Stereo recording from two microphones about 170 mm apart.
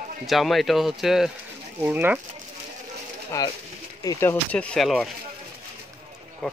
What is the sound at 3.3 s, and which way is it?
Speech, 20° left (ahead or behind).